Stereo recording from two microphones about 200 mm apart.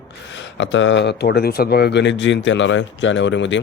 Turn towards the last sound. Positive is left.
turn(degrees=65)  # may be behind; listen again after turning